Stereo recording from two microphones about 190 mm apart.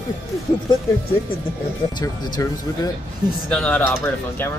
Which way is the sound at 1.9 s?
20° left (ahead or behind).